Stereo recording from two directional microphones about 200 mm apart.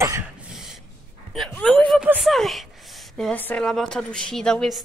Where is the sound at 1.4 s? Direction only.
5° left (ahead or behind).